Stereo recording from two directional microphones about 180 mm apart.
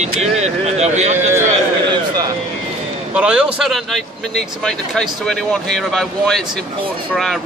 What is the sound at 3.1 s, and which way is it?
A man's voice, 5° right (ahead or behind).